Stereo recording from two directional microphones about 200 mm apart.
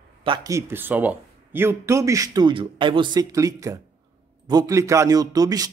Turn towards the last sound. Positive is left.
turn(degrees=-20)  # may be behind; listen again after turning